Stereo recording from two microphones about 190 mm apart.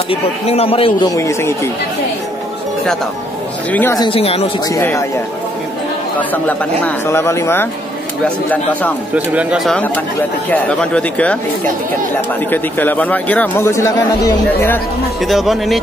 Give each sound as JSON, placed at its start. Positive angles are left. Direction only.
{"t": 0.1, "sound": "a man's voice", "side_deg": 30}
{"t": 1.1, "sound": "a man's voice", "side_deg": 15}
{"t": 3.7, "sound": "a man's voice", "side_deg": 10}
{"t": 4.0, "sound": "speech", "side_deg": 30}
{"t": 4.6, "sound": "a man's voice", "side_deg": 15}
{"t": 6.1, "sound": "a man's voice", "side_deg": 10}
{"t": 9.1, "sound": "a man's voice", "side_deg": -5}
{"t": 15.2, "sound": "speech", "side_deg": 0}